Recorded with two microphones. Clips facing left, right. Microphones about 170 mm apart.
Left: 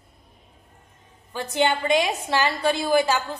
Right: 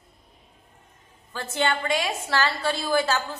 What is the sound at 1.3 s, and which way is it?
A woman's voice, 15° left (ahead or behind).